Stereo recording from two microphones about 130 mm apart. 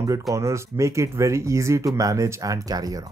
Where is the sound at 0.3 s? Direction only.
25° right (ahead or behind).